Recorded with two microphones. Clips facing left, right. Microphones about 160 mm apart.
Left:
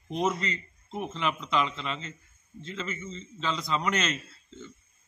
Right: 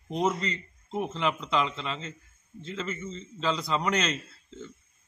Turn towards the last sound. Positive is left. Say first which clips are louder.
# right 1 dB
turn(degrees=0)  # may be behind; listen again after turning